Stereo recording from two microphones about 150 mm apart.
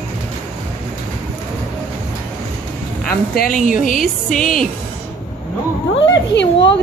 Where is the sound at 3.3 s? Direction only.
65° left (ahead or behind).